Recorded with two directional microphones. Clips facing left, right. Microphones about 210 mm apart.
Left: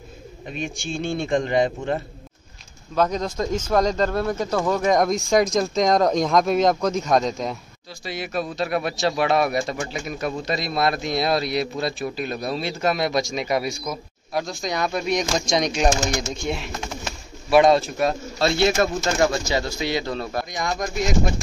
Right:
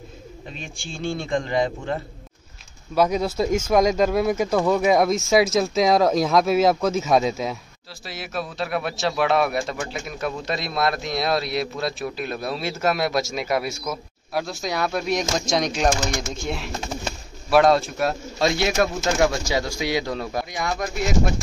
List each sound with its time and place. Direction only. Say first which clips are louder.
0.5 s speech: left 8 dB; 15° left (ahead or behind)
2.9 s speech: right 2 dB; 10° right (ahead or behind)
18.4 s speech: left 1 dB; 15° right (ahead or behind)